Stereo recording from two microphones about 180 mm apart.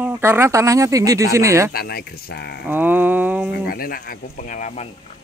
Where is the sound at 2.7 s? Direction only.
10° right (ahead or behind).